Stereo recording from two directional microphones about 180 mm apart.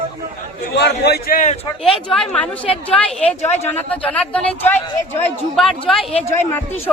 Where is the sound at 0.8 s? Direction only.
65° left (ahead or behind).